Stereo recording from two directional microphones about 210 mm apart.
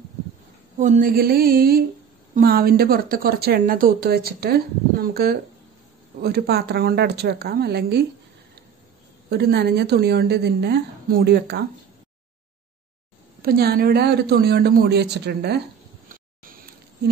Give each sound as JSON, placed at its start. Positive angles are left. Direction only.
{"t": 0.7, "sound": "speech", "side_deg": -35}
{"t": 9.3, "sound": "speech", "side_deg": -50}
{"t": 13.4, "sound": "speech", "side_deg": -45}